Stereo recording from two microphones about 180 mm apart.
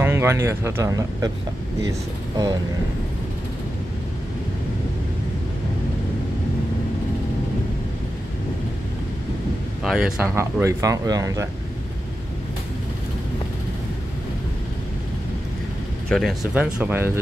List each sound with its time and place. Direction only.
0.0 s speech: 15° right (ahead or behind)
9.8 s speech: 5° right (ahead or behind)
10.3 s speech: 15° right (ahead or behind)
16.1 s speech: centre (ahead or behind)